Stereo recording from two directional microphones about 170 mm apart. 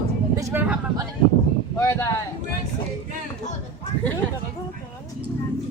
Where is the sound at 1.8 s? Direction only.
15° left (ahead or behind).